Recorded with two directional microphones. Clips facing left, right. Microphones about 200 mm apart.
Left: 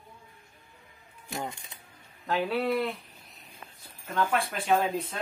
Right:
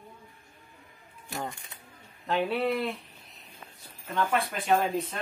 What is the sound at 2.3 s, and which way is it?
Speech, centre (ahead or behind).